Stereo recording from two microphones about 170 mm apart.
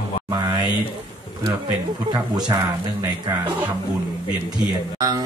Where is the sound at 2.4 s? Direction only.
20° right (ahead or behind).